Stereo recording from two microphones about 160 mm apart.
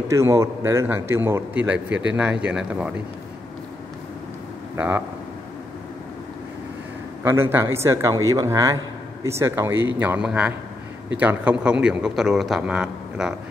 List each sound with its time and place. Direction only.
0.1 s a man's voice: 15° right (ahead or behind)
4.7 s a man's voice: 10° right (ahead or behind)
7.2 s a man's voice: 15° right (ahead or behind)